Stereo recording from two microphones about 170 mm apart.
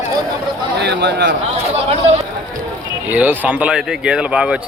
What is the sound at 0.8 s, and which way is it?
Speech, 80° right.